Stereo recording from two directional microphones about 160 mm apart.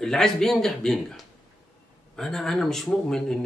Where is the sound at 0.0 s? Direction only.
5° left (ahead or behind).